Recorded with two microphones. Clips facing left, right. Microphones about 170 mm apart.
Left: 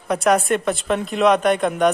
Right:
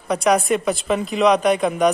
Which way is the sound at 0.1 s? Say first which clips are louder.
Even; centre (ahead or behind).